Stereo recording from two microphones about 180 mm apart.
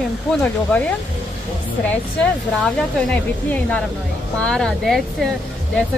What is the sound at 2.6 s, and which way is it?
Speech, centre (ahead or behind).